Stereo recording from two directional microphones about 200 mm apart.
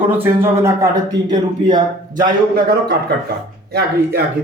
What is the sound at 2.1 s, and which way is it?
Speech, 45° right (ahead or behind).